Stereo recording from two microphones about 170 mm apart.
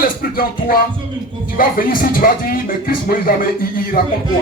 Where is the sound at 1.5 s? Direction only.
55° left (ahead or behind).